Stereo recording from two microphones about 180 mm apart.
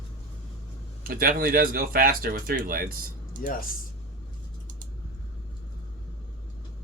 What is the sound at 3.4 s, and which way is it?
Speech, 50° left (ahead or behind).